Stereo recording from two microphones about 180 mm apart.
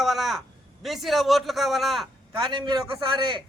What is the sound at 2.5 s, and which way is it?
Speech, 25° right (ahead or behind).